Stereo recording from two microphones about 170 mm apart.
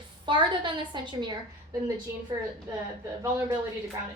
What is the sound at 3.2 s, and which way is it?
Speech, 15° right (ahead or behind).